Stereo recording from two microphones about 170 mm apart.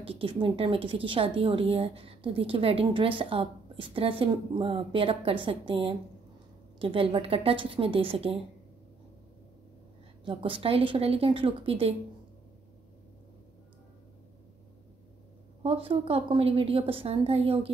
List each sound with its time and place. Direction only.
0.0 s a woman's voice: 35° right (ahead or behind)
10.2 s a woman's voice: 30° right (ahead or behind)
15.6 s a woman's voice: 35° right (ahead or behind)